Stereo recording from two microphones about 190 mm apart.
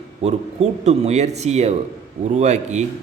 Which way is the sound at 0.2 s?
35° right (ahead or behind).